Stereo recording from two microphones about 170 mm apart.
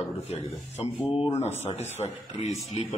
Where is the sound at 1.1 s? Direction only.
40° left (ahead or behind).